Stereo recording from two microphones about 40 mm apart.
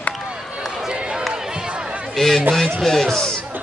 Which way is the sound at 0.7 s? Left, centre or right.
Centre.